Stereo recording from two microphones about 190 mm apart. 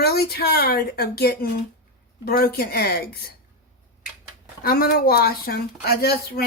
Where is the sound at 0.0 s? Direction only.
55° left (ahead or behind).